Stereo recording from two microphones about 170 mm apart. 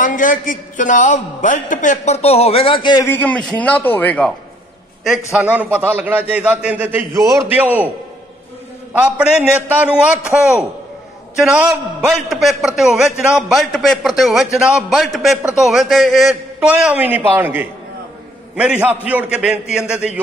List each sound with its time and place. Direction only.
0.0 s a man's voice: 50° left (ahead or behind); by 3.1 s 25° left (ahead or behind)
3.1 s a man's voice: 10° left (ahead or behind)
5.3 s a man's voice: 10° right (ahead or behind)
8.9 s a man's voice: 10° right (ahead or behind)